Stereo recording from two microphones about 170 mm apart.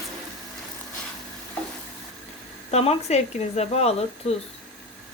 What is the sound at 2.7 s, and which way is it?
Speech, 40° left (ahead or behind).